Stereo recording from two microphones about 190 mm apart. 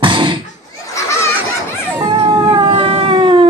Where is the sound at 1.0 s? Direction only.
15° left (ahead or behind).